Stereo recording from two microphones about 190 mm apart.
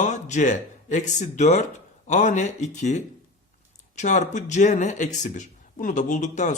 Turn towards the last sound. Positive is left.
turn(degrees=40)  # may be behind; listen again after turning